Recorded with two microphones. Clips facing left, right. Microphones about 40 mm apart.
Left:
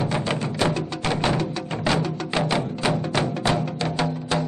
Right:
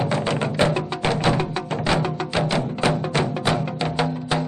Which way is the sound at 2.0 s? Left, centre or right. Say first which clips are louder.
Right 2 dB; right.